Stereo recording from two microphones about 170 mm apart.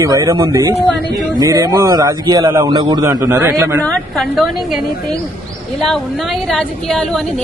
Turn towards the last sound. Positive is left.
turn(degrees=5)  # may be behind; listen again after turning